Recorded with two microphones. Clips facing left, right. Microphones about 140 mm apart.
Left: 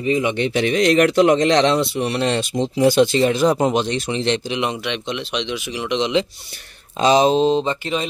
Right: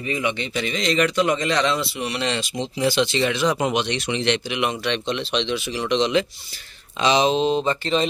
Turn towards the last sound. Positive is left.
turn(degrees=20)  # may be behind; listen again after turning